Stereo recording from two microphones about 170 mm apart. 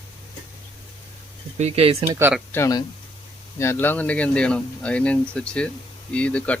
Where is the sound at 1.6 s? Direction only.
35° right (ahead or behind).